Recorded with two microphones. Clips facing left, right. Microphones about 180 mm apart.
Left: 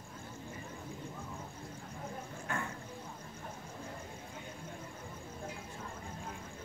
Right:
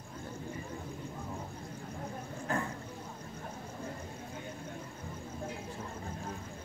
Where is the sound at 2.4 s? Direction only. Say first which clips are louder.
Right 5 dB; 35° right (ahead or behind).